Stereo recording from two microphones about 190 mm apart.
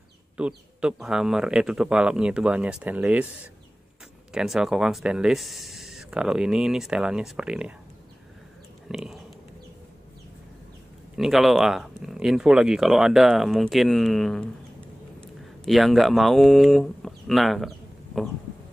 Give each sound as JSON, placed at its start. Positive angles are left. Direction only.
{"t": 0.4, "sound": "speech", "side_deg": -5}
{"t": 4.3, "sound": "speech", "side_deg": -5}
{"t": 8.8, "sound": "a sound", "side_deg": 0}
{"t": 11.1, "sound": "speech", "side_deg": 0}